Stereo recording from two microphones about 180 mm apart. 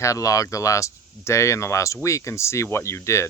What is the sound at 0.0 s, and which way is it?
Speech, 20° left (ahead or behind).